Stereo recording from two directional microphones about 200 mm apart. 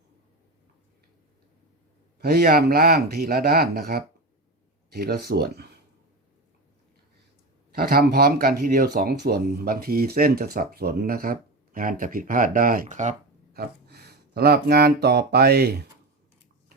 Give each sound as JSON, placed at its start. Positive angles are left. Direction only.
{"t": 2.1, "sound": "speech", "side_deg": -50}
{"t": 7.7, "sound": "speech", "side_deg": -50}
{"t": 13.5, "sound": "speech", "side_deg": -50}